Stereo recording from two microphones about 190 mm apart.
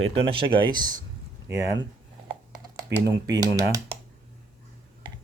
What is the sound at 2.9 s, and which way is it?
Speech, 65° right (ahead or behind).